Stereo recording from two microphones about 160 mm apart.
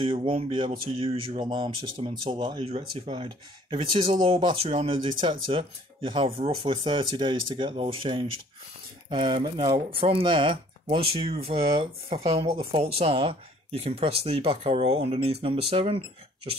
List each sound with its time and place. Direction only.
0.0 s speech: 35° right (ahead or behind)